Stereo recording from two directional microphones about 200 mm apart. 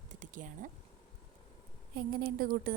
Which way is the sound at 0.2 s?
40° right (ahead or behind).